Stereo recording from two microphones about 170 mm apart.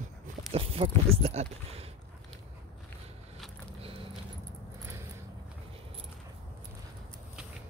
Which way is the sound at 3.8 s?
35° right (ahead or behind).